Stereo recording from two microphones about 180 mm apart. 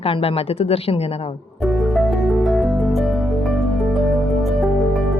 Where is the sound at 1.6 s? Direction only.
Centre (ahead or behind).